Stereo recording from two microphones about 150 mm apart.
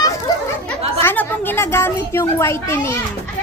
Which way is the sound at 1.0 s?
15° left (ahead or behind).